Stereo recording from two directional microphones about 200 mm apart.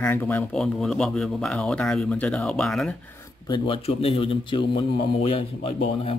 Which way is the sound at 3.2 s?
20° left (ahead or behind).